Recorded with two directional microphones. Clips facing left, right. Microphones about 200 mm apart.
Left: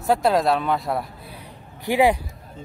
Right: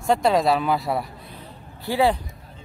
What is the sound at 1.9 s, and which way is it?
Speech, 15° left (ahead or behind).